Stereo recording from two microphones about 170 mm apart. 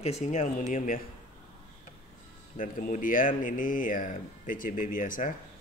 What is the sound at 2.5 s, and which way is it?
Speech, 55° left (ahead or behind).